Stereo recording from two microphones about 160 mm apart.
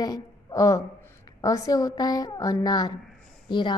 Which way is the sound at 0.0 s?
25° left (ahead or behind).